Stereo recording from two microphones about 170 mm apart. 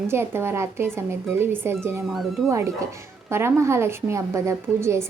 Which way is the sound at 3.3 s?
15° right (ahead or behind).